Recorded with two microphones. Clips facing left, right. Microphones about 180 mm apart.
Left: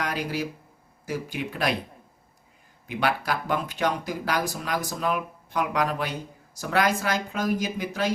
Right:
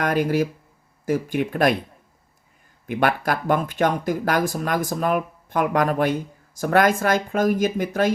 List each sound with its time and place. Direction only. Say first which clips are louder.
0.0 s speech: right 8 dB; 50° right (ahead or behind)
2.8 s speech: right 5 dB; 50° right (ahead or behind)